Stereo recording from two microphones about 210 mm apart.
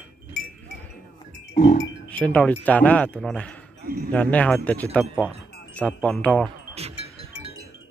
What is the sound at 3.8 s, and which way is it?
Speech, 45° right (ahead or behind).